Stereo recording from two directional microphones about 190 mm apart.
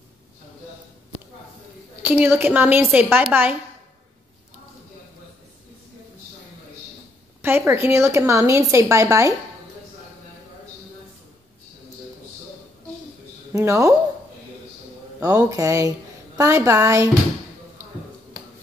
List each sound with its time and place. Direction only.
2.0 s speech: 10° right (ahead or behind)
7.4 s speech: 10° right (ahead or behind)
13.5 s speech: 15° right (ahead or behind)
15.2 s speech: 20° right (ahead or behind)